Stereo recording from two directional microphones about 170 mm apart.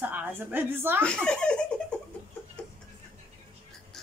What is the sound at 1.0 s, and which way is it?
Speech, 5° left (ahead or behind).